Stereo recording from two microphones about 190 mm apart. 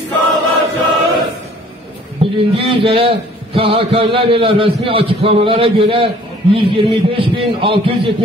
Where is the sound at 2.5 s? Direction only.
30° right (ahead or behind).